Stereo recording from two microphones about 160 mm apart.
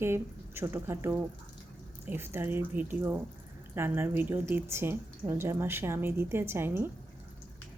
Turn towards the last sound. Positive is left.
turn(degrees=-15)  # may be behind; listen again after turning